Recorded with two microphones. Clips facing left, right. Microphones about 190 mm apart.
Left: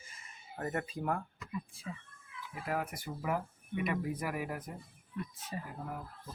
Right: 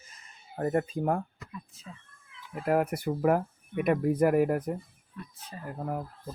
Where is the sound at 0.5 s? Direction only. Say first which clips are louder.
Right 9 dB; 35° right (ahead or behind).